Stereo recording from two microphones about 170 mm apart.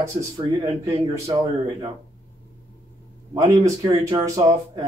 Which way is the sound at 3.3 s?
20° right (ahead or behind).